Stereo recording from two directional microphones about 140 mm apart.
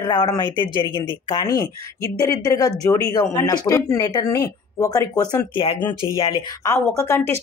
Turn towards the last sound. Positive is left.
turn(degrees=20)  # may be behind; listen again after turning